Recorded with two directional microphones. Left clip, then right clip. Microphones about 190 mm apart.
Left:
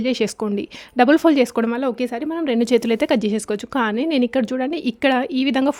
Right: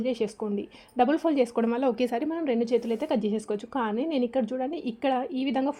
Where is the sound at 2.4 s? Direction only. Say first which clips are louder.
Left 9 dB; 30° left (ahead or behind).